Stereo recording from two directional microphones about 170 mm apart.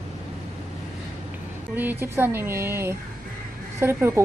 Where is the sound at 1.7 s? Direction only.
10° right (ahead or behind).